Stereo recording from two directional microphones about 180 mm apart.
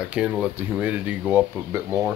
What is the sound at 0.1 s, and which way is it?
Speech, 5° right (ahead or behind).